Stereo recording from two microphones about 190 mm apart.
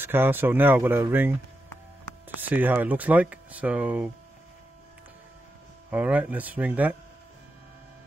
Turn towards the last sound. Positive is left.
turn(degrees=-10)  # may be behind; listen again after turning